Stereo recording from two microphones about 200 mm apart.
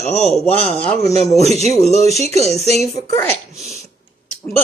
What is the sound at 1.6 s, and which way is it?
Speech, 35° right (ahead or behind).